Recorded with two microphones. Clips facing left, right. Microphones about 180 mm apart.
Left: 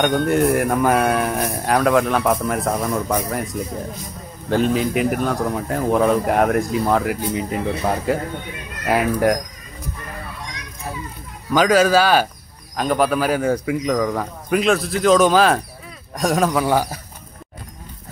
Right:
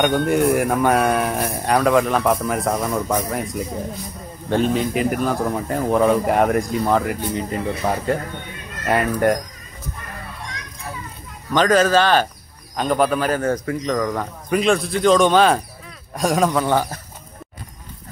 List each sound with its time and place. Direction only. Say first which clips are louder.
0.0 s a man's voice: even; centre (ahead or behind)
11.5 s a man's voice: left 1 dB; 10° left (ahead or behind)